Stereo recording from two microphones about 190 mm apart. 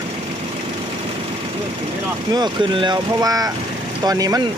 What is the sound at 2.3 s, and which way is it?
Speech, 25° right (ahead or behind).